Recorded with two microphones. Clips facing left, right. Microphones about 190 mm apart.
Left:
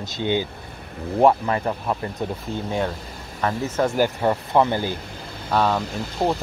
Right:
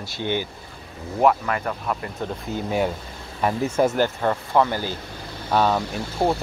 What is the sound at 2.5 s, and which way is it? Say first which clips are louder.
Speech: even; centre (ahead or behind).